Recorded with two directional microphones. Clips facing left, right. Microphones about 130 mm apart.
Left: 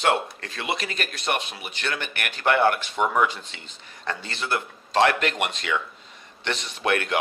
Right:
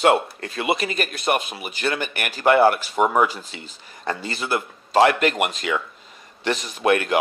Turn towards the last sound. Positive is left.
turn(degrees=-5)  # may be behind; listen again after turning